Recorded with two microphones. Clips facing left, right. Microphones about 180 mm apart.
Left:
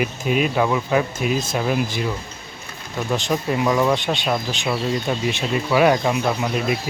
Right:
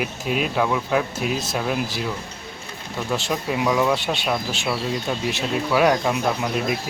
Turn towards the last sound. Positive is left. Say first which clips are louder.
# left 1 dB
turn(degrees=0)  # may be behind; listen again after turning